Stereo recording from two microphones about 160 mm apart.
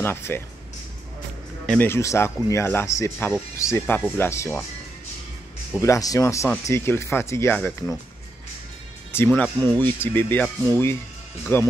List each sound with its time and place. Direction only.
0.0 s speech: 15° left (ahead or behind)
1.7 s speech: 15° left (ahead or behind)
5.8 s speech: 20° left (ahead or behind)
9.1 s speech: 10° left (ahead or behind)